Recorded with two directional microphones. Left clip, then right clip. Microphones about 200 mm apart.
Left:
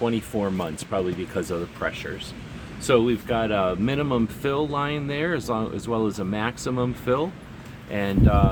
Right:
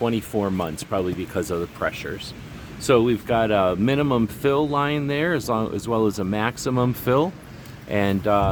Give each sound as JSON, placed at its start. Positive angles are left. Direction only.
{"t": 0.0, "sound": "speech", "side_deg": -45}
{"t": 2.8, "sound": "speech", "side_deg": -60}